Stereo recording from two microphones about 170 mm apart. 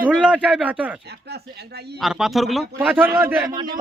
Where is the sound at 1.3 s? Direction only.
70° right (ahead or behind).